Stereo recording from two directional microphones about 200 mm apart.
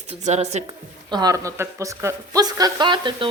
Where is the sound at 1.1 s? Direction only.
20° right (ahead or behind).